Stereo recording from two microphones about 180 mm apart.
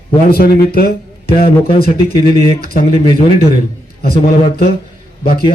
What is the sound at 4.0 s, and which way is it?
Speech, 60° left (ahead or behind).